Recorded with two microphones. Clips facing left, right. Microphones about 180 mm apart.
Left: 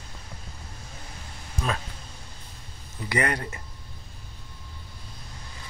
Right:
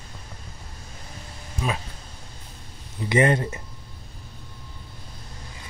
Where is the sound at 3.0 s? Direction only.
25° right (ahead or behind).